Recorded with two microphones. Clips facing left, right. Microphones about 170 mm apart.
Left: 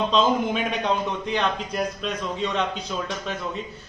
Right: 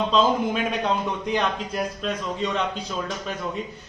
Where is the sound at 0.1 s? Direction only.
5° right (ahead or behind).